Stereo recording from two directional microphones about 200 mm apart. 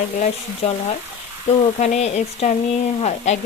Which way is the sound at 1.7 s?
35° left (ahead or behind).